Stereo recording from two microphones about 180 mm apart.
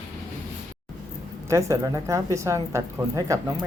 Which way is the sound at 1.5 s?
15° right (ahead or behind).